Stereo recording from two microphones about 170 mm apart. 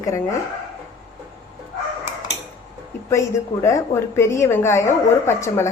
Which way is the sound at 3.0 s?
15° left (ahead or behind).